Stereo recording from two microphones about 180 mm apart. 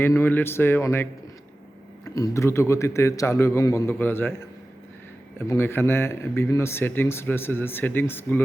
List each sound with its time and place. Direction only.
0.0 s speech: 10° left (ahead or behind)
2.0 s speech: 20° left (ahead or behind)